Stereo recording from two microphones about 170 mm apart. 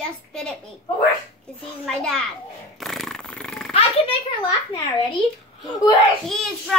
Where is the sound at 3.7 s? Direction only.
35° left (ahead or behind).